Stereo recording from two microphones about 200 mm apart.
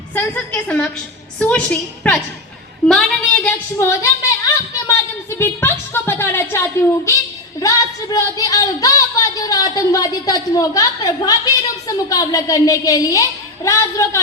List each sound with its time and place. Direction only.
0.1 s a woman's voice: 10° left (ahead or behind)
4.0 s speech: 15° left (ahead or behind)